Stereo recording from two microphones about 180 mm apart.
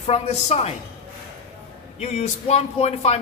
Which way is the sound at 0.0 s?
35° left (ahead or behind).